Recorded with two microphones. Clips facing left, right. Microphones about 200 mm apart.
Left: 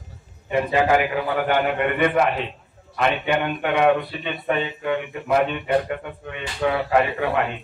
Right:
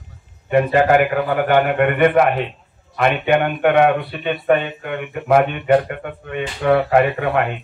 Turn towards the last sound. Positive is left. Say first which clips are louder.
# right 4 dB
turn(degrees=-55)  # may be behind; listen again after turning